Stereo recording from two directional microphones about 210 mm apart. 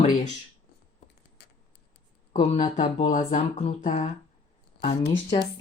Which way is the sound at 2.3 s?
35° left (ahead or behind).